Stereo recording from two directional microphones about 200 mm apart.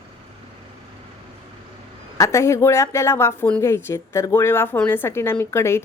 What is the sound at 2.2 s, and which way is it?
Speech, 15° left (ahead or behind).